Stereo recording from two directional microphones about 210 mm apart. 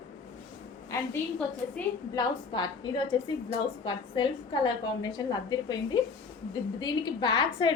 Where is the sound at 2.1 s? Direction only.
20° left (ahead or behind).